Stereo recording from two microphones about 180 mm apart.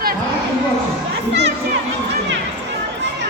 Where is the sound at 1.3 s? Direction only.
70° right (ahead or behind).